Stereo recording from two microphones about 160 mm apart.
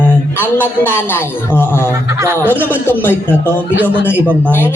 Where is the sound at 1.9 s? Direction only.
15° right (ahead or behind).